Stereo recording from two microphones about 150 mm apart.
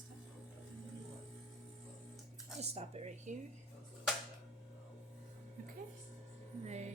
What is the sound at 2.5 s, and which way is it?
Speech, 45° right (ahead or behind).